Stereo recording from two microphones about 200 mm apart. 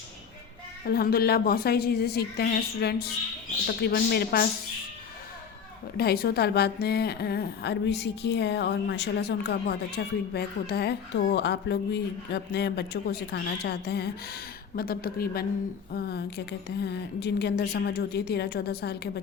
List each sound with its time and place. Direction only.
0.9 s a woman's voice: 50° left (ahead or behind)
6.0 s a woman's voice: 50° left (ahead or behind)